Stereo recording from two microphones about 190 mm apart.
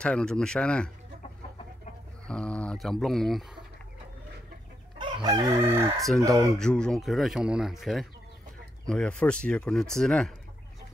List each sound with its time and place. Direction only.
0.0 s speech: 5° left (ahead or behind)
2.2 s speech: 5° left (ahead or behind)
4.9 s chicken: 25° right (ahead or behind)
6.1 s speech: 15° right (ahead or behind)
6.5 s speech: 5° left (ahead or behind)